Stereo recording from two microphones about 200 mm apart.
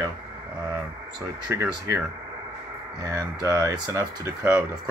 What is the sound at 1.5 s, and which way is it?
Speech, 10° right (ahead or behind).